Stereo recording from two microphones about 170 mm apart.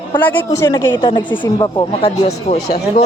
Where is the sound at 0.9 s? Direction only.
30° left (ahead or behind).